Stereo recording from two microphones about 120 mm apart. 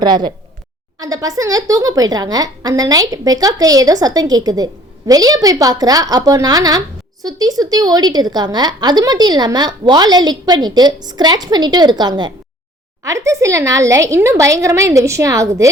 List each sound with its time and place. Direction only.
0.0 s a woman's voice: 40° right (ahead or behind)
13.1 s a woman's voice: 25° right (ahead or behind)